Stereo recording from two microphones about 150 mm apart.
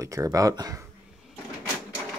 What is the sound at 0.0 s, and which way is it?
Speech, 20° right (ahead or behind).